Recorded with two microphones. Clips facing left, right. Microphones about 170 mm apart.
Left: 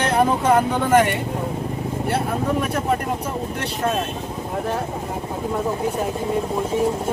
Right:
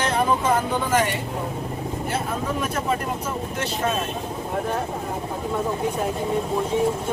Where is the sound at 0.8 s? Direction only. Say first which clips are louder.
Left 5 dB; 55° left (ahead or behind).